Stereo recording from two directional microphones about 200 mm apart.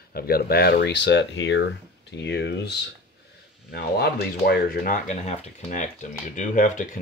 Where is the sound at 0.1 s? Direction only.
50° left (ahead or behind).